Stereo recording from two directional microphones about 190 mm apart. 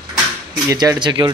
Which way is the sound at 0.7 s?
20° right (ahead or behind).